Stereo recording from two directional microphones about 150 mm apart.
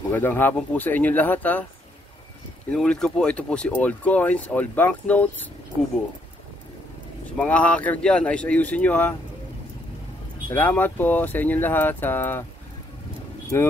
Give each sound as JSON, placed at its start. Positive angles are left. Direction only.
{"t": 0.1, "sound": "speech", "side_deg": 15}
{"t": 2.7, "sound": "speech", "side_deg": 5}
{"t": 7.3, "sound": "speech", "side_deg": 10}
{"t": 10.5, "sound": "speech", "side_deg": 10}
{"t": 13.5, "sound": "speech", "side_deg": 15}